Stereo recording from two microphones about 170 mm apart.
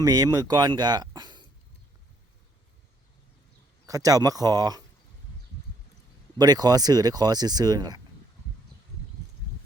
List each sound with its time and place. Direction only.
0.0 s speech: 20° right (ahead or behind)
3.8 s speech: 20° right (ahead or behind)
6.4 s speech: 25° right (ahead or behind)